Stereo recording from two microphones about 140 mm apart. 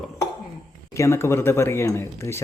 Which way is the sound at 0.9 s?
20° left (ahead or behind).